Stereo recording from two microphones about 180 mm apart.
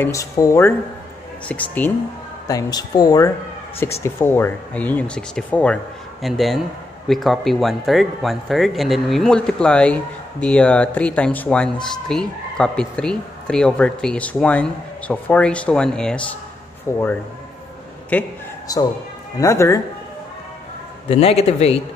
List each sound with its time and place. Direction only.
0.0 s speech: 15° left (ahead or behind)
2.4 s speech: 20° left (ahead or behind); by 16.3 s 5° left (ahead or behind)
16.9 s speech: 15° left (ahead or behind)
18.1 s speech: 10° left (ahead or behind)
18.7 s speech: 20° left (ahead or behind)
21.1 s speech: 35° left (ahead or behind)